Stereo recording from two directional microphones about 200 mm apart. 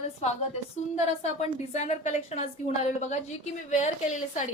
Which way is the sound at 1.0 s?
35° left (ahead or behind).